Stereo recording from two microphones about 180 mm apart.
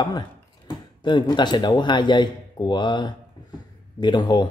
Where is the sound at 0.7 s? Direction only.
25° left (ahead or behind).